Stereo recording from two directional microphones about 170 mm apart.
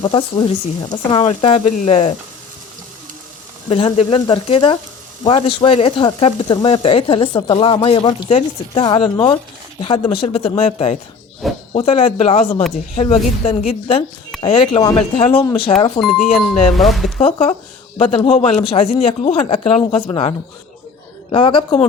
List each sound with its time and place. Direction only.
0.0 s speech: 25° left (ahead or behind)
3.7 s speech: 35° left (ahead or behind)
16.0 s speech: centre (ahead or behind)
17.2 s speech: 30° left (ahead or behind)